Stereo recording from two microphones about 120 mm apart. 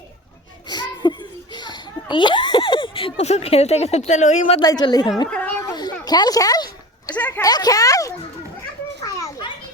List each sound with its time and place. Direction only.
0.7 s a sound: 35° left (ahead or behind); by 4.4 s 85° left
4.6 s speech: 35° left (ahead or behind)
5.3 s speech: 10° left (ahead or behind)
5.6 s a sound: 35° left (ahead or behind)
7.2 s speech: 15° left (ahead or behind)
7.4 s speech: 30° left (ahead or behind)
9.0 s children playing: 25° left (ahead or behind)